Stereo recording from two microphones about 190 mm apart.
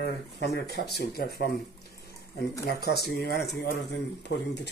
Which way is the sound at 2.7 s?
60° left (ahead or behind).